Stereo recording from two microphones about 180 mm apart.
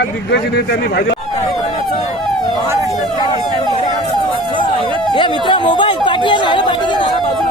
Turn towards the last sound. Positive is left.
turn(degrees=25)  # may be behind; listen again after turning